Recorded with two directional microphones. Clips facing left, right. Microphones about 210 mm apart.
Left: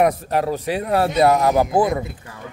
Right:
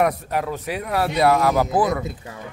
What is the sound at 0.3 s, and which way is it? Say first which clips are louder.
A man's voice: left 4 dB; 30° left (ahead or behind).